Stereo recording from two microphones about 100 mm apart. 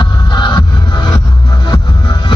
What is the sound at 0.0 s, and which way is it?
Music, 50° left (ahead or behind).